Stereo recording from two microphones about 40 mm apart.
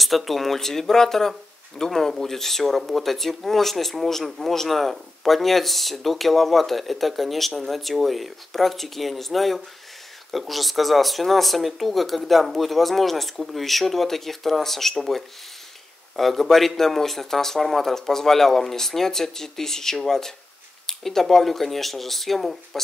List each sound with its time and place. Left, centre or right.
0.0 s speech: centre